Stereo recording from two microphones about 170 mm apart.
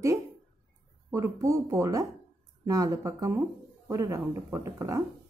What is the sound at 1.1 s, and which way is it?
Speech, 15° right (ahead or behind).